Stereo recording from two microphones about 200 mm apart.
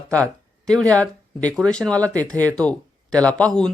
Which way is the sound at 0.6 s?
5° left (ahead or behind).